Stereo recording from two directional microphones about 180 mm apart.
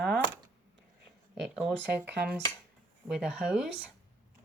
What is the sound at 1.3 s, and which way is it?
Speech, 5° right (ahead or behind).